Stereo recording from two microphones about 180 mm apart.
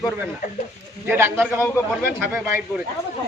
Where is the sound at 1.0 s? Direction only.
10° right (ahead or behind).